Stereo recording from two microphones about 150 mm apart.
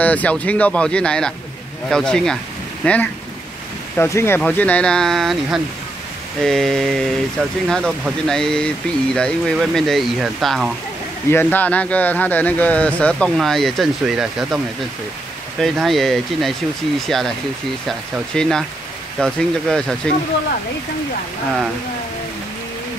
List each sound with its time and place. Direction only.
0.0 s speech: 10° left (ahead or behind)
11.2 s speech: 15° left (ahead or behind); by 14.6 s 5° right (ahead or behind)
15.6 s speech: centre (ahead or behind)